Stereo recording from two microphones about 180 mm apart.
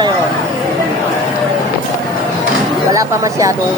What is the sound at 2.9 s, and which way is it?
Speech, 15° right (ahead or behind).